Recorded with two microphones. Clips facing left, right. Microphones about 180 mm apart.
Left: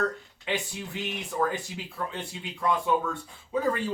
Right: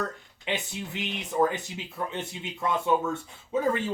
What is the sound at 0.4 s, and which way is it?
Speech, 20° right (ahead or behind).